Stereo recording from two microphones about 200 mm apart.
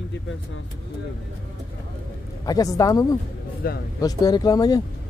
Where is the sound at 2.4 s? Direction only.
20° left (ahead or behind).